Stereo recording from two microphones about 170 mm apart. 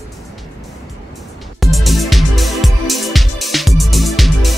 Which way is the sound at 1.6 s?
Centre (ahead or behind).